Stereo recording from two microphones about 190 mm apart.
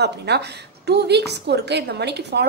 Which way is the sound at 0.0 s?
60° right (ahead or behind).